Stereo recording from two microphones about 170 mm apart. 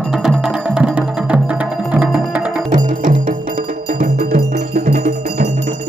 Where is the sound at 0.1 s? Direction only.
Centre (ahead or behind).